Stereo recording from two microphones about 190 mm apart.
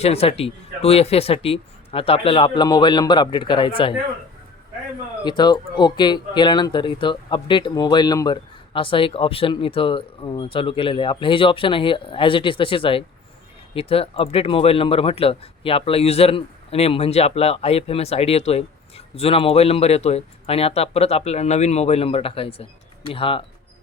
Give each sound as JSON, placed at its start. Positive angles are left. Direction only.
{"t": 0.0, "sound": "speech", "side_deg": 30}
{"t": 5.2, "sound": "speech", "side_deg": 20}